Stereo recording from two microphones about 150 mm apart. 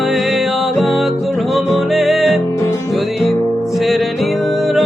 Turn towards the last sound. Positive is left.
turn(degrees=0)  # may be behind; listen again after turning